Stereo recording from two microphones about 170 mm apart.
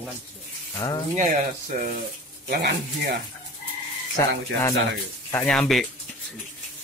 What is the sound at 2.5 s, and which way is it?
Speech, 75° right (ahead or behind).